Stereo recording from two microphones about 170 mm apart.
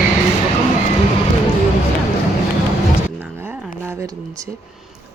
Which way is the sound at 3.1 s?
10° right (ahead or behind).